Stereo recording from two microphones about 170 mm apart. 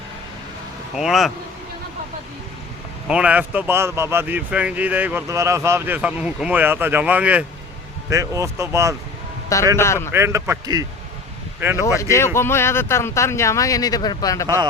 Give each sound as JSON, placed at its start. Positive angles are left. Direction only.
{"t": 0.9, "sound": "a man's voice", "side_deg": 0}
{"t": 3.1, "sound": "speech", "side_deg": -5}
{"t": 8.1, "sound": "speech", "side_deg": -20}
{"t": 9.7, "sound": "speech", "side_deg": 15}
{"t": 10.1, "sound": "speech", "side_deg": -15}
{"t": 11.9, "sound": "speech", "side_deg": 15}